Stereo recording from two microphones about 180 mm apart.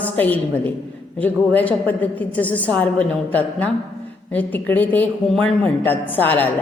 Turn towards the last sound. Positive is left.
turn(degrees=10)  # may be behind; listen again after turning